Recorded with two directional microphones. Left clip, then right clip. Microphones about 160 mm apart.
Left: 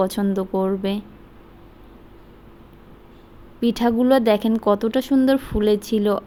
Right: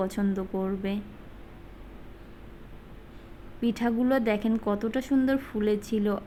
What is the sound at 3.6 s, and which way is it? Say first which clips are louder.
Speech: left 8 dB; 25° left (ahead or behind).